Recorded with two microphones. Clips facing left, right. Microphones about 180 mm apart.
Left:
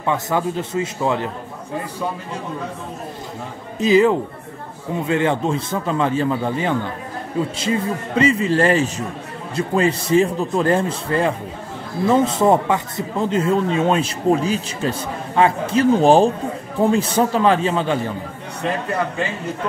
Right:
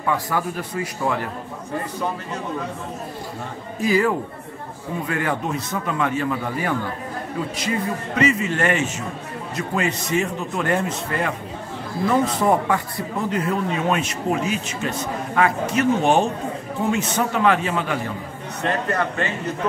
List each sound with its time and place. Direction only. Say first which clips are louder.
0.0 s a man's voice: left 3 dB; 25° left (ahead or behind)
3.8 s a man's voice: left 5 dB; 20° left (ahead or behind)